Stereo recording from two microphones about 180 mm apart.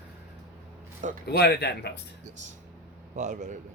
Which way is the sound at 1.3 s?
65° left (ahead or behind).